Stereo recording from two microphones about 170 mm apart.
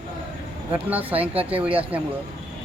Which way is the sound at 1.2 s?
35° right (ahead or behind).